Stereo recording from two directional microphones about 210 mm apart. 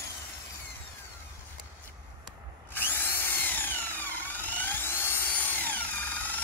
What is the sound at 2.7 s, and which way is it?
Drill, 10° left (ahead or behind).